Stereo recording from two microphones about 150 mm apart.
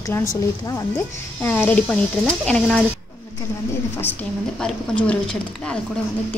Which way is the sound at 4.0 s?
10° left (ahead or behind).